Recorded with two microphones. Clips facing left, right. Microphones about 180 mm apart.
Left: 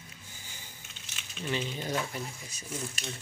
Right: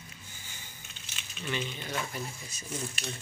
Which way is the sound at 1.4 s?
35° left (ahead or behind).